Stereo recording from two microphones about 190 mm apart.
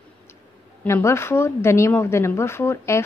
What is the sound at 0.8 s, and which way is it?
A woman's voice, 15° left (ahead or behind).